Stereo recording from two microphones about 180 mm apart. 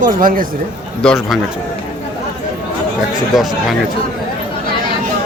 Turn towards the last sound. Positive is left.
turn(degrees=0)  # may be behind; listen again after turning